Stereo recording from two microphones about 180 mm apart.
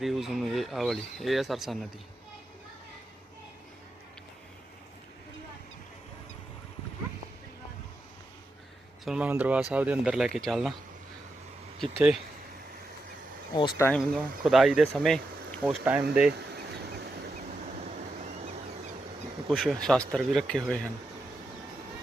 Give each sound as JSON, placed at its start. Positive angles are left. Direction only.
{"t": 0.0, "sound": "speech", "side_deg": 0}
{"t": 9.0, "sound": "speech", "side_deg": -5}
{"t": 11.8, "sound": "speech", "side_deg": 0}
{"t": 13.6, "sound": "speech", "side_deg": 25}
{"t": 13.8, "sound": "speech", "side_deg": 5}
{"t": 19.5, "sound": "speech", "side_deg": 0}